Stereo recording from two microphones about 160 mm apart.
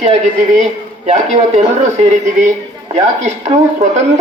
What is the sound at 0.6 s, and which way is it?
A man's voice, 45° right (ahead or behind).